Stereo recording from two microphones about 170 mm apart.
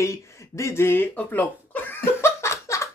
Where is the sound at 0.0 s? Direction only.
15° left (ahead or behind).